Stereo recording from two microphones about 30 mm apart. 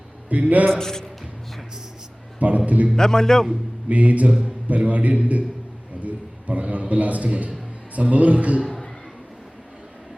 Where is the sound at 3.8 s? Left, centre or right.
Right.